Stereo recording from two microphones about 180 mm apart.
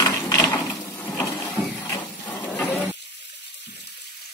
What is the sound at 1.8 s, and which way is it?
Printer, 20° left (ahead or behind).